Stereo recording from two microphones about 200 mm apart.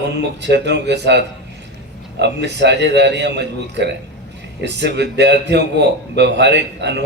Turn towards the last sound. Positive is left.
turn(degrees=-60)  # may be behind; listen again after turning